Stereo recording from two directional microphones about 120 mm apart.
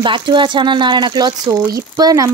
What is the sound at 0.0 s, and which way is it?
Speech, 40° right (ahead or behind).